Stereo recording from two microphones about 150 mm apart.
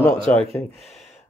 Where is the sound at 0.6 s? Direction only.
15° left (ahead or behind).